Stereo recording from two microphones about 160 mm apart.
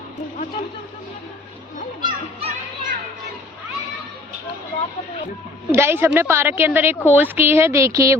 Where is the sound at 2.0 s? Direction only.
30° right (ahead or behind).